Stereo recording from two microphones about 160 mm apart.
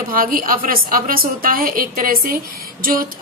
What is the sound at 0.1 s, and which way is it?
A woman's voice, 60° right (ahead or behind).